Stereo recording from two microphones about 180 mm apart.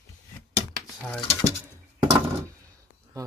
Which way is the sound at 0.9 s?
5° left (ahead or behind).